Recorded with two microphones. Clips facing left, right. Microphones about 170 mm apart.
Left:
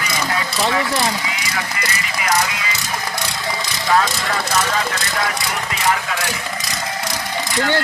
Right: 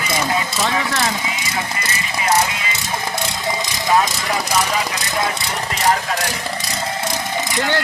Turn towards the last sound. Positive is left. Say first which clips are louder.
# left 1 dB
turn(degrees=-20)  # may be behind; listen again after turning